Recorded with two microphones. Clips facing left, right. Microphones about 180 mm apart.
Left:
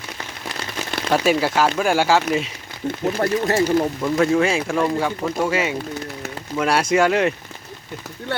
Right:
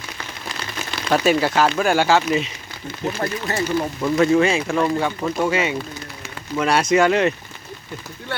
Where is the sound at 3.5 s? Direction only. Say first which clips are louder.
Left 3 dB; 40° left (ahead or behind).